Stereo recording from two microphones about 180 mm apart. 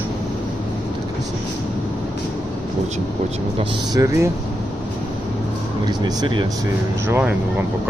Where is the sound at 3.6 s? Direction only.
20° right (ahead or behind).